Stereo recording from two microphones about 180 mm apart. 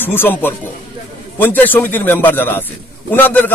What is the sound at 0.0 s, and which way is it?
A man's voice, 10° left (ahead or behind).